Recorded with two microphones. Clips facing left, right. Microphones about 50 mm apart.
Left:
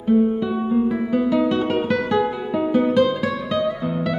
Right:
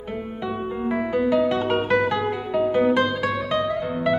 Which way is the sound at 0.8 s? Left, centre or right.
Right.